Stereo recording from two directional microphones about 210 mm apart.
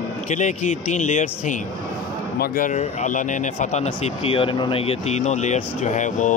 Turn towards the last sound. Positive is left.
turn(degrees=35)  # may be behind; listen again after turning